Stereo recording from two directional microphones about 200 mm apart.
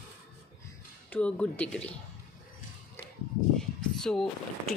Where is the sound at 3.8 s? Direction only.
Centre (ahead or behind).